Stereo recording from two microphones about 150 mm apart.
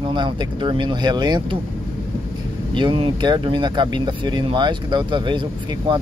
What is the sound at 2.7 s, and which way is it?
Speech, 30° right (ahead or behind).